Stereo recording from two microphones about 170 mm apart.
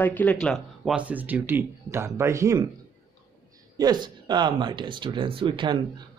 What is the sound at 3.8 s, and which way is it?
Speech, 25° right (ahead or behind).